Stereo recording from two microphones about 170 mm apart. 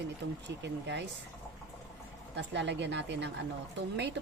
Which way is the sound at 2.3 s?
90° right.